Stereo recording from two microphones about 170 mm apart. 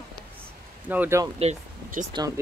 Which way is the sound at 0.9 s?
10° right (ahead or behind).